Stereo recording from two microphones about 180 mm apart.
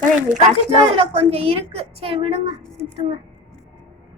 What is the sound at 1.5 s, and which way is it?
A woman's voice, 30° right (ahead or behind).